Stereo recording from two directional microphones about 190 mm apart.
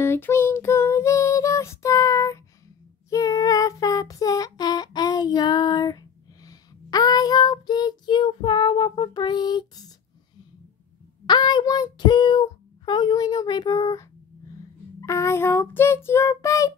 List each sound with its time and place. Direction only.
0.0 s child singing: 10° left (ahead or behind)
11.2 s child singing: 25° left (ahead or behind)